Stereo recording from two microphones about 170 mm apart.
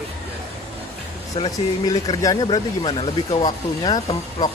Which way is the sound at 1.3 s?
25° left (ahead or behind).